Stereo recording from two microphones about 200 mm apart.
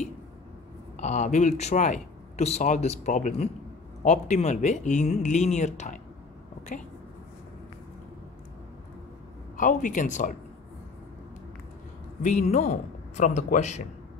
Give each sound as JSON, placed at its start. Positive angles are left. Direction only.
{"t": 0.9, "sound": "speech", "side_deg": 35}
{"t": 9.6, "sound": "speech", "side_deg": 40}
{"t": 12.2, "sound": "speech", "side_deg": 35}